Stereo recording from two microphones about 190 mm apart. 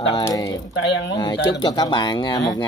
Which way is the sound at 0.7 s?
70° left (ahead or behind).